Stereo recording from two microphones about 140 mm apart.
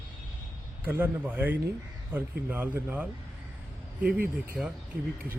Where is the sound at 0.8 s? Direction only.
15° right (ahead or behind).